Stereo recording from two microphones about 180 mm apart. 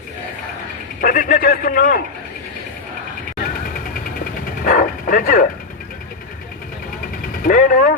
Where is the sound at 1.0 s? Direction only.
50° left (ahead or behind).